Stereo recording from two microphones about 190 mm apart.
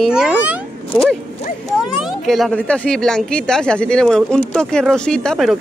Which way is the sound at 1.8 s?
Centre (ahead or behind).